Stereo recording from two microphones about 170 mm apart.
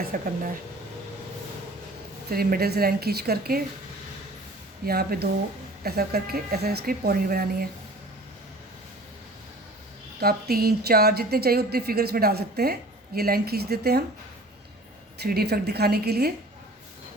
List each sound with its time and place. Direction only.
0.1 s speech: 55° right (ahead or behind)
2.3 s a woman's voice: 60° right (ahead or behind)
4.9 s a woman's voice: 65° right (ahead or behind)
10.2 s a woman's voice: 65° right (ahead or behind)
15.2 s a woman's voice: 70° right (ahead or behind)